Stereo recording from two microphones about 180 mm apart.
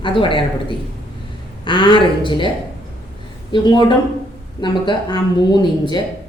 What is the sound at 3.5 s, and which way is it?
A woman's voice, 25° left (ahead or behind).